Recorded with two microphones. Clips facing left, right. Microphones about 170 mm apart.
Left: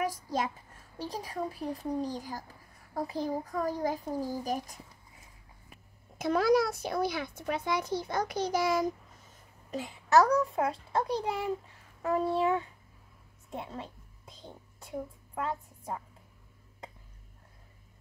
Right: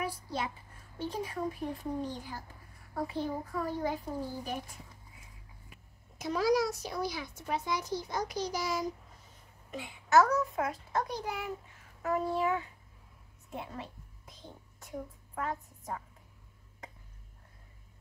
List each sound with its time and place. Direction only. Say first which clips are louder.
0.0 s a sound: left 4 dB; 40° left (ahead or behind)
0.9 s a child's voice: even; 35° left (ahead or behind)
6.1 s a child's voice: left 3 dB; 55° left (ahead or behind)
9.7 s a child's voice: left 3 dB; 40° left (ahead or behind)